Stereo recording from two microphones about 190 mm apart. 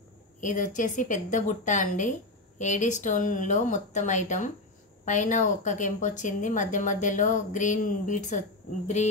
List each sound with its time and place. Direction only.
0.4 s a woman's voice: 40° left (ahead or behind)